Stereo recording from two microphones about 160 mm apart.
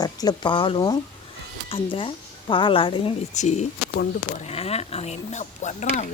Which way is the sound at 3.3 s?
45° left (ahead or behind).